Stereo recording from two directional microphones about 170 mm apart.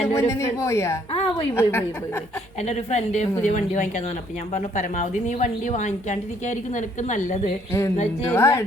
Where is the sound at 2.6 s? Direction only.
40° left (ahead or behind).